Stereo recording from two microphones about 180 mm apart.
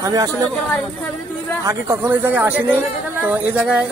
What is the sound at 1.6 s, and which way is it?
Speech, 10° right (ahead or behind).